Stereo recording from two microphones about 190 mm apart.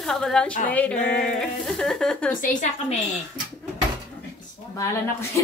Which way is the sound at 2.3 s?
45° left (ahead or behind).